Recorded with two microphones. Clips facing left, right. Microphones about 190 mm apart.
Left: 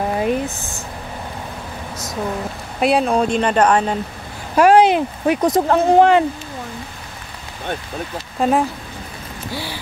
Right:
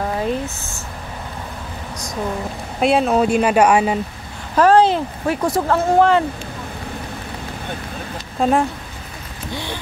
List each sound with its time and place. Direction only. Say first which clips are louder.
0.2 s a sound: left 2 dB; 15° left (ahead or behind)
2.8 s speech: right 1 dB; centre (ahead or behind)
4.6 s speech: left 1 dB; 15° left (ahead or behind)
8.4 s speech: even; centre (ahead or behind)